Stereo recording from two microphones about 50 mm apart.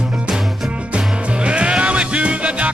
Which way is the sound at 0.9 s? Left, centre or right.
Right.